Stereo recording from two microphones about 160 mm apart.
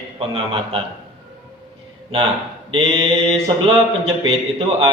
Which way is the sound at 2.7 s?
35° right (ahead or behind).